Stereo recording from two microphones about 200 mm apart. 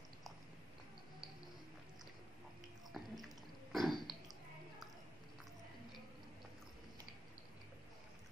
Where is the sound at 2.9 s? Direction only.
Centre (ahead or behind).